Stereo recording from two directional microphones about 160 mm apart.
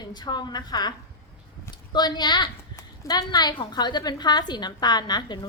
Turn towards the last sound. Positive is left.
turn(degrees=25)  # may be behind; listen again after turning